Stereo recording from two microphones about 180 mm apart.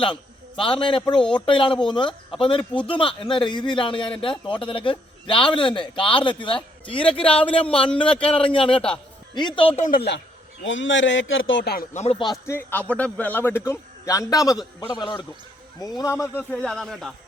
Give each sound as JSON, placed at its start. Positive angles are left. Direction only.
{"t": 0.0, "sound": "a man's voice", "side_deg": 30}
{"t": 9.8, "sound": "a woman's voice", "side_deg": 60}
{"t": 10.6, "sound": "speech", "side_deg": 90}
{"t": 12.5, "sound": "a man's voice", "side_deg": 10}